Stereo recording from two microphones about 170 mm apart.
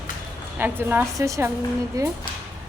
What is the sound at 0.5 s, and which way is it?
A woman's voice, 10° right (ahead or behind).